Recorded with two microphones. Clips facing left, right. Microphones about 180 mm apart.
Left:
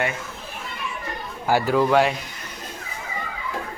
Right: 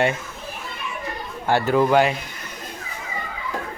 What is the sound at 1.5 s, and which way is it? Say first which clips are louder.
Speech: right 1 dB; 5° left (ahead or behind).